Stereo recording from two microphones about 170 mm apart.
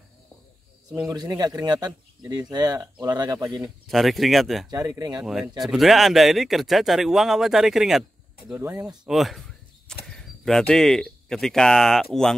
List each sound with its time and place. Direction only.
1.0 s a man's voice: 20° right (ahead or behind)
3.8 s speech: centre (ahead or behind)
4.6 s a man's voice: 20° right (ahead or behind)
5.2 s speech: centre (ahead or behind)
8.5 s speech: 10° right (ahead or behind)
10.0 s a sound: centre (ahead or behind)
10.7 s speech: 5° left (ahead or behind)